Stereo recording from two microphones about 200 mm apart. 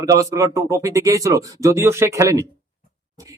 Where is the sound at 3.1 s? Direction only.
15° right (ahead or behind).